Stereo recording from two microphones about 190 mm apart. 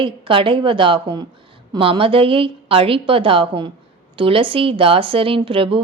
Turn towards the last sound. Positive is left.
turn(degrees=-30)  # may be behind; listen again after turning